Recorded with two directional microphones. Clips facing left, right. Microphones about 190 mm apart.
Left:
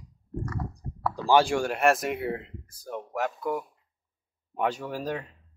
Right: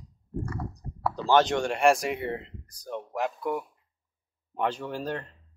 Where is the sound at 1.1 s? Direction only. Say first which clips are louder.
Left 1 dB; 10° left (ahead or behind).